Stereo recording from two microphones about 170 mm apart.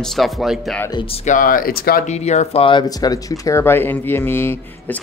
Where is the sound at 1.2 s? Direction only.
55° left (ahead or behind).